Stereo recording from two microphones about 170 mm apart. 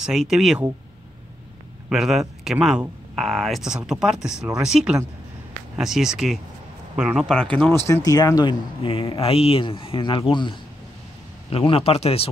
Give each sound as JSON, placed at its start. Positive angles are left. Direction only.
{"t": 0.0, "sound": "speech", "side_deg": -5}
{"t": 1.9, "sound": "a man's voice", "side_deg": 0}